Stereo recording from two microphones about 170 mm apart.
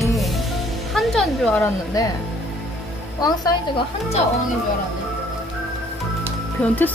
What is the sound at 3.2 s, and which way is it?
Speech, 25° left (ahead or behind).